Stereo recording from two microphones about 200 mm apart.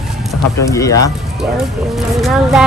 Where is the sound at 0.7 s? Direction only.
15° left (ahead or behind).